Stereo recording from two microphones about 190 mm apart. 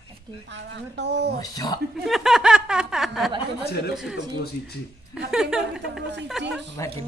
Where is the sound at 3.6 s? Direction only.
60° left (ahead or behind).